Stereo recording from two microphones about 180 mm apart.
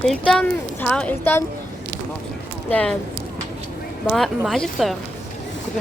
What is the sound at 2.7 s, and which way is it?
Speech, 5° left (ahead or behind).